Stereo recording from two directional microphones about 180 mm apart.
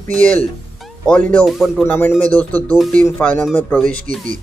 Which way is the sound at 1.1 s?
10° left (ahead or behind).